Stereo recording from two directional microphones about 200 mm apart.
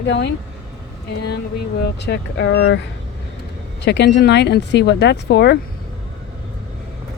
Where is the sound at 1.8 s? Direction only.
55° left (ahead or behind).